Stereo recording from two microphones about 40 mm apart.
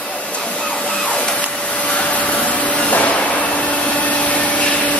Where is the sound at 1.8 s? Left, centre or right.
Left.